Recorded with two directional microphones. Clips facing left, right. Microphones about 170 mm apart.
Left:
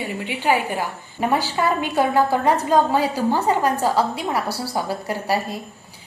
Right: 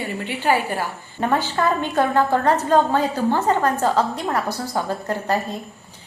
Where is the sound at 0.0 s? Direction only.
15° left (ahead or behind).